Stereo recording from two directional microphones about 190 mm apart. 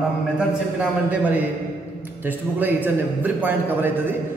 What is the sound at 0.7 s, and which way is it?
A man's voice, 5° right (ahead or behind).